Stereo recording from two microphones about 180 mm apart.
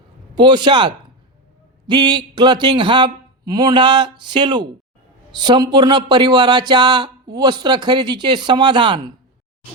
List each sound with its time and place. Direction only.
0.3 s speech: 25° right (ahead or behind)